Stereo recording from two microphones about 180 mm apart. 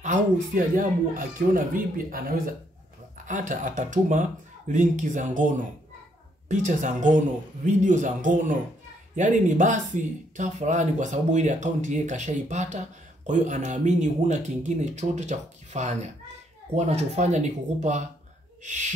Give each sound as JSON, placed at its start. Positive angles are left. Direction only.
{"t": 0.7, "sound": "speech", "side_deg": -50}
{"t": 6.5, "sound": "speech", "side_deg": -45}